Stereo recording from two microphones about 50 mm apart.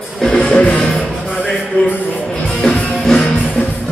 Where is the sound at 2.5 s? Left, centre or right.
Left.